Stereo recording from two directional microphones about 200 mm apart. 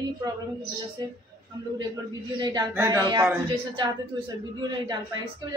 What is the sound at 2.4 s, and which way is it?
A woman's voice, 20° right (ahead or behind).